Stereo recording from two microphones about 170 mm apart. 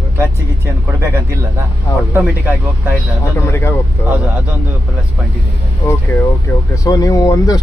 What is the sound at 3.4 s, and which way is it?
Speech, 15° left (ahead or behind).